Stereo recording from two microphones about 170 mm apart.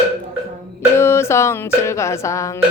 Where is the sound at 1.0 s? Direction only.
15° left (ahead or behind).